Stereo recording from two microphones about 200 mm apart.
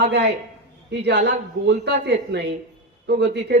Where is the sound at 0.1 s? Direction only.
60° right (ahead or behind).